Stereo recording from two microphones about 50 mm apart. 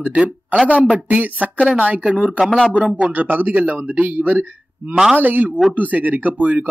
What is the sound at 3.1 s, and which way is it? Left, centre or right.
Speech, right.